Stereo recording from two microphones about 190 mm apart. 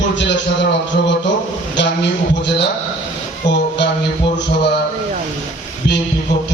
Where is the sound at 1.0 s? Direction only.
60° left (ahead or behind).